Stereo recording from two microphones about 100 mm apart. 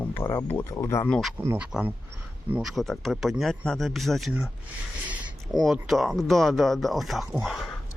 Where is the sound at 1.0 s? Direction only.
5° left (ahead or behind).